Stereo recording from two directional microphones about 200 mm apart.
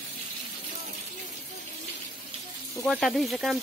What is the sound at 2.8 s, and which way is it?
Speech, centre (ahead or behind).